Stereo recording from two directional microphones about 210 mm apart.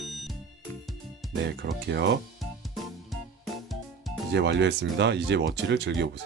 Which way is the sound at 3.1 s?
Centre (ahead or behind).